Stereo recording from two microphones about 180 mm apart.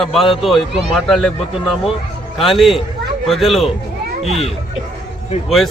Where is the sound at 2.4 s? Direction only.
Centre (ahead or behind).